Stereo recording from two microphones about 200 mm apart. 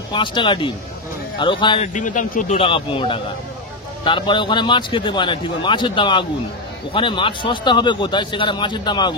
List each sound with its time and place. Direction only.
0.1 s speech: 25° left (ahead or behind)
2.0 s speech: 40° left (ahead or behind); by 9.1 s 20° left (ahead or behind)